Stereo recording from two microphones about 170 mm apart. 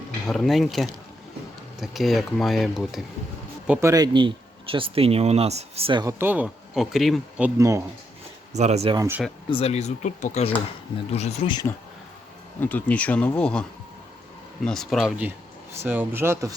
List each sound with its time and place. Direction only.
0.3 s speech: centre (ahead or behind)
3.7 s speech: 15° right (ahead or behind)
6.1 s speech: 10° right (ahead or behind)
8.5 s speech: 40° right (ahead or behind)
8.9 s speech: 15° right (ahead or behind)
9.5 s speech: 35° left (ahead or behind)
12.5 s speech: 10° left (ahead or behind); by 16.6 s 15° right (ahead or behind)